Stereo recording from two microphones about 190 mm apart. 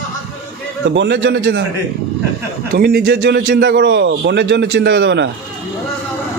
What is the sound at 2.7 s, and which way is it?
A man's voice, 55° right (ahead or behind).